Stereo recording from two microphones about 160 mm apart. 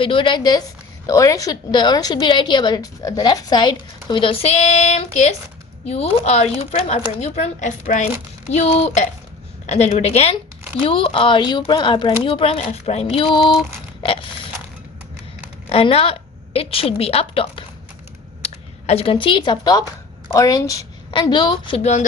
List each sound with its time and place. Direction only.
0.0 s a woman's voice: 30° left (ahead or behind)
15.7 s a woman's voice: 35° left (ahead or behind)